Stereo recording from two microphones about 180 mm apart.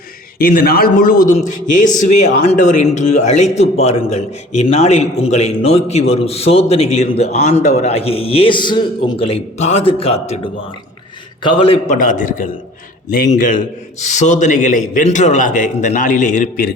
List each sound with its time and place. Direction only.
0.3 s a man's voice: 55° left (ahead or behind); by 11.9 s 35° left (ahead or behind)
11.9 s a man's voice: 45° left (ahead or behind)